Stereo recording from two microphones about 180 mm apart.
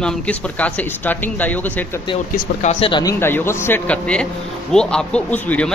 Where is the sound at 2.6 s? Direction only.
35° left (ahead or behind).